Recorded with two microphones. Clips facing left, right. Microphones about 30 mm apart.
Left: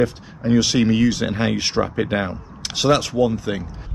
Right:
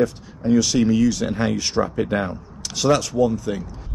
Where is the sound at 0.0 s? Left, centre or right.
Left.